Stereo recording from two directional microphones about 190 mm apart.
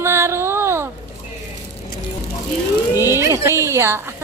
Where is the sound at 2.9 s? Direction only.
15° left (ahead or behind).